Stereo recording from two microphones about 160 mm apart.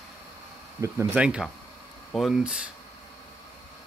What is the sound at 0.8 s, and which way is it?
Speech, 20° right (ahead or behind).